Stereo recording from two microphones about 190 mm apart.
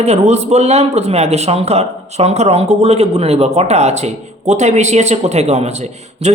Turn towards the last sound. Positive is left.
turn(degrees=-35)  # may be behind; listen again after turning